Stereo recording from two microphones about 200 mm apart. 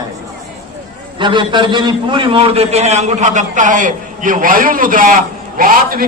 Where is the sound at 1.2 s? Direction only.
25° right (ahead or behind).